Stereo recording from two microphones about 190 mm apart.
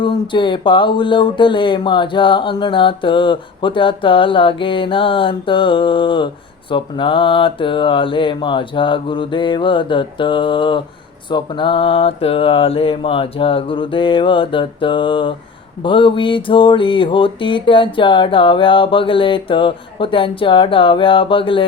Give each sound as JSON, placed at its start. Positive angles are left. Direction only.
{"t": 0.0, "sound": "speech", "side_deg": 25}